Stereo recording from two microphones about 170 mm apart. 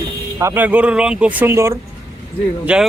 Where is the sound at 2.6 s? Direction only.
5° right (ahead or behind).